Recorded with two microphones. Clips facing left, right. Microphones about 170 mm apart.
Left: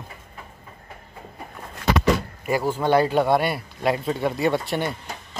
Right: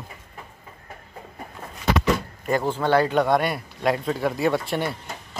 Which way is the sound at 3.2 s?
5° left (ahead or behind).